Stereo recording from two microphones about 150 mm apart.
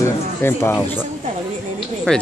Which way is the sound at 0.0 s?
15° left (ahead or behind).